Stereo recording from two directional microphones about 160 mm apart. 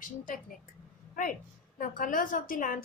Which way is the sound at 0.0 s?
55° left (ahead or behind).